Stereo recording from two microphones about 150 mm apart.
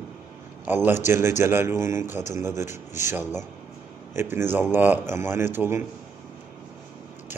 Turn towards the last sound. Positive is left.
turn(degrees=-15)  # may be behind; listen again after turning